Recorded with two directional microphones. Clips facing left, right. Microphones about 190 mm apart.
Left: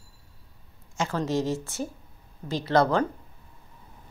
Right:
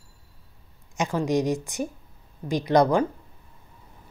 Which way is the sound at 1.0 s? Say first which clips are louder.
Right 3 dB; 15° right (ahead or behind).